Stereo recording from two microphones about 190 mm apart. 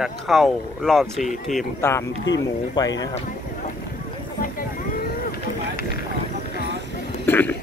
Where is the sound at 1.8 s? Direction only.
15° left (ahead or behind).